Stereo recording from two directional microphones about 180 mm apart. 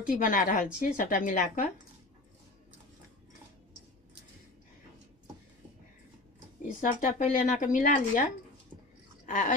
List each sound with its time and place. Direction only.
0.0 s speech: 50° left (ahead or behind)
6.8 s speech: 50° left (ahead or behind)
9.2 s a sound: 45° left (ahead or behind)